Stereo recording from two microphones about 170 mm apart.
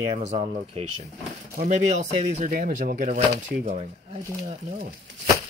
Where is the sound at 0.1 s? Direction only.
40° right (ahead or behind).